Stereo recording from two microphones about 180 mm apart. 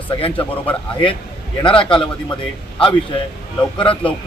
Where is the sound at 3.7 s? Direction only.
30° left (ahead or behind).